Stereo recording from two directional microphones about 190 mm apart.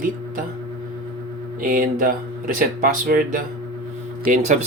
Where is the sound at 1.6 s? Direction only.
45° right (ahead or behind).